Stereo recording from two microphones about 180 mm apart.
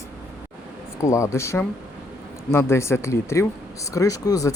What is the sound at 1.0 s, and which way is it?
Speech, 15° left (ahead or behind).